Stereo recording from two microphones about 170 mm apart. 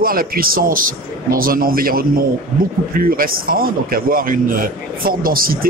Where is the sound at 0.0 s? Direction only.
60° right (ahead or behind).